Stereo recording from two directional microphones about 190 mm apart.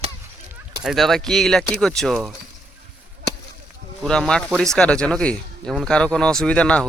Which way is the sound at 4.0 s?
5° left (ahead or behind).